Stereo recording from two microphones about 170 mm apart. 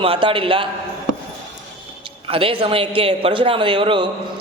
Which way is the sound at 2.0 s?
30° right (ahead or behind).